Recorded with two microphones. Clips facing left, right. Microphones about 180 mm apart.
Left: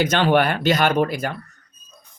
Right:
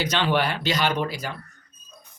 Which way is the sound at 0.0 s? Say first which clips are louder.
Left 6 dB; 50° left (ahead or behind).